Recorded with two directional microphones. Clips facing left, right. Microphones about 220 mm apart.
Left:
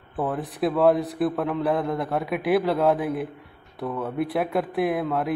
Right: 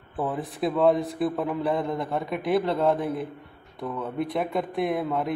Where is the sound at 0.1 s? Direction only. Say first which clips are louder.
Left 2 dB; centre (ahead or behind).